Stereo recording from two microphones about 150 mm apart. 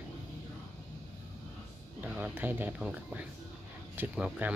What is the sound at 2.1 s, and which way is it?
Speech, 10° right (ahead or behind).